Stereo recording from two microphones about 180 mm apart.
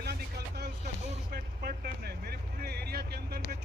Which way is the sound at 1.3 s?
60° right (ahead or behind).